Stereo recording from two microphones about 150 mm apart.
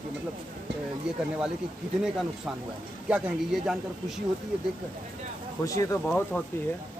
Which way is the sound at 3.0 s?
10° right (ahead or behind).